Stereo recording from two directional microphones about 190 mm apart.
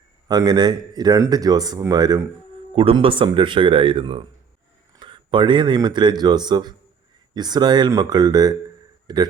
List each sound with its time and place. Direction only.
0.3 s speech: 20° right (ahead or behind)